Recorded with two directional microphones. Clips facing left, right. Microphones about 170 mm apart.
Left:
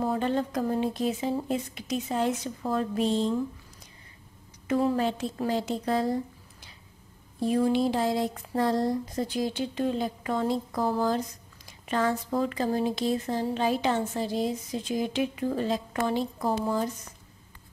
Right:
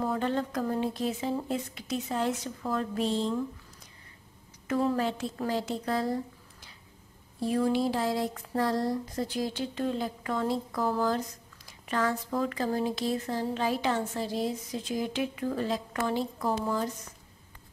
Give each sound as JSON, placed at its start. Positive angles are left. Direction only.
{"t": 0.0, "sound": "speech", "side_deg": 20}
{"t": 4.6, "sound": "speech", "side_deg": 20}
{"t": 7.3, "sound": "speech", "side_deg": 20}